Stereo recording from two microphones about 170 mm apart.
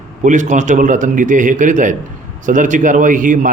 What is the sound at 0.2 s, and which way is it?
A man's voice, 45° right (ahead or behind).